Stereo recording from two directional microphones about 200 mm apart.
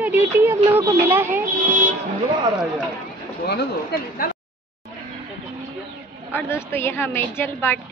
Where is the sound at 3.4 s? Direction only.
50° left (ahead or behind).